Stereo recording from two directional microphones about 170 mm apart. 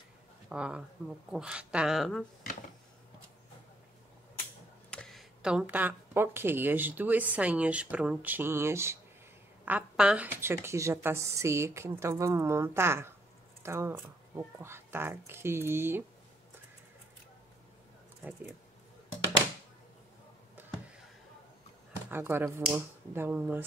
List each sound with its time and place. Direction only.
0.5 s speech: 5° right (ahead or behind)
4.9 s a woman's voice: centre (ahead or behind); by 16.0 s 15° right (ahead or behind)
18.2 s speech: 10° right (ahead or behind)
22.1 s speech: 15° right (ahead or behind)